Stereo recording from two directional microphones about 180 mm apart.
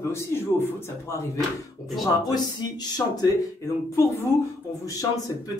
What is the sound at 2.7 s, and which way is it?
A man's voice, 20° left (ahead or behind).